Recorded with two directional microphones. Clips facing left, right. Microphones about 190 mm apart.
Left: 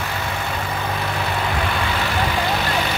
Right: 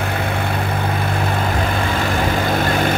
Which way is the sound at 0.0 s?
55° right (ahead or behind).